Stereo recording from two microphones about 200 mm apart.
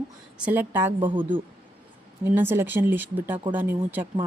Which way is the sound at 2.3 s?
10° right (ahead or behind).